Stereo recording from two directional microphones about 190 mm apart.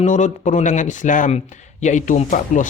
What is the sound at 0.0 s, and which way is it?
Speech, 40° left (ahead or behind).